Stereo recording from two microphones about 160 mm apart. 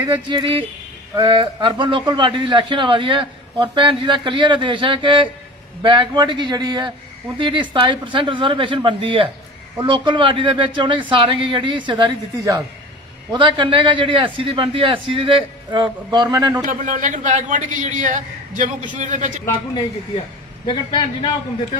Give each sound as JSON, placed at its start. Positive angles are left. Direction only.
{"t": 0.3, "sound": "a man's voice", "side_deg": -30}
{"t": 16.6, "sound": "a man's voice", "side_deg": -55}
{"t": 20.6, "sound": "a man's voice", "side_deg": 30}